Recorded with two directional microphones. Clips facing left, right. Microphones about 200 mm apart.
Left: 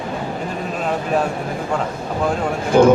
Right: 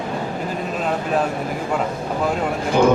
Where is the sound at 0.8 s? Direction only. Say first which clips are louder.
Left 1 dB; centre (ahead or behind).